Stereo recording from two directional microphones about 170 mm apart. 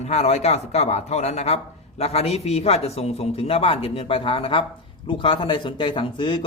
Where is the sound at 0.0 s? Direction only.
40° left (ahead or behind).